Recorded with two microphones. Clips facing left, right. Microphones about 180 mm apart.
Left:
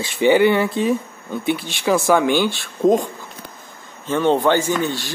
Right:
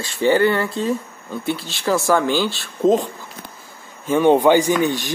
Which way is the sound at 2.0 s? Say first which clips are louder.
Left 2 dB; 15° left (ahead or behind).